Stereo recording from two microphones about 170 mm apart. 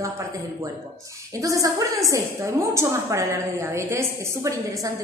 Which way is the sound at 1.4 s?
20° right (ahead or behind).